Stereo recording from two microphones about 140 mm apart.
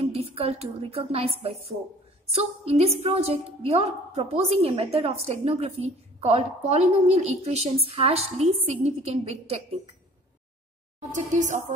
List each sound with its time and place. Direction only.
0.0 s a woman's voice: 45° right (ahead or behind)
11.0 s speech: 60° right (ahead or behind)